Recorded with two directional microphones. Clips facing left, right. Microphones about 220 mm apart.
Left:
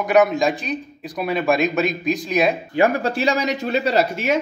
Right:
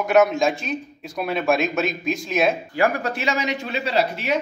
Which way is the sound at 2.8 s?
30° left (ahead or behind).